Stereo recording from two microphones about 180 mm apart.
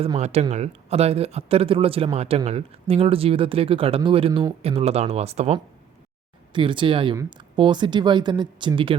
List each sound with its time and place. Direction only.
0.0 s speech: 35° right (ahead or behind)